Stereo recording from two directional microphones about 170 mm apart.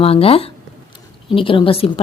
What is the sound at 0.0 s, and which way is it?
A woman's voice, 35° left (ahead or behind).